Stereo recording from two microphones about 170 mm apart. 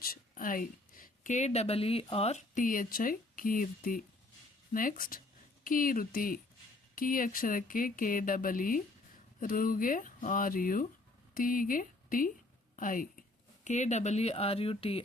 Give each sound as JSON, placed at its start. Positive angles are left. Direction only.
{"t": 0.0, "sound": "speech", "side_deg": 60}